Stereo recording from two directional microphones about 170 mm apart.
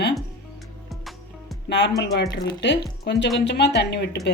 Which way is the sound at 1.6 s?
90° left.